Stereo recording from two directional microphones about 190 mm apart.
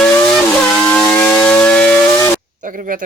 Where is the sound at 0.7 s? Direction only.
5° left (ahead or behind).